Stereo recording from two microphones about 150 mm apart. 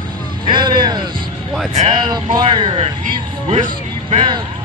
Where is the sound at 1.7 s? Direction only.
35° right (ahead or behind).